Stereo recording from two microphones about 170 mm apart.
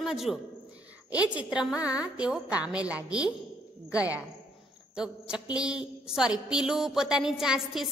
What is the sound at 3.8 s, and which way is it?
Speech, 20° left (ahead or behind).